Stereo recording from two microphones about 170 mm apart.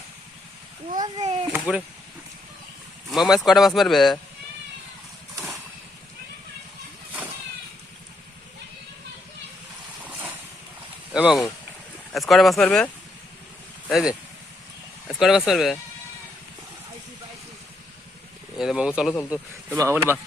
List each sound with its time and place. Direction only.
0.9 s a child's voice: 25° right (ahead or behind)
1.2 s speech: 35° right (ahead or behind)
1.5 s speech: 5° right (ahead or behind)
3.1 s speech: centre (ahead or behind)
10.0 s boat: 10° right (ahead or behind)
11.1 s speech: 5° right (ahead or behind)
18.5 s speech: 5° right (ahead or behind)
19.3 s speech: 15° right (ahead or behind)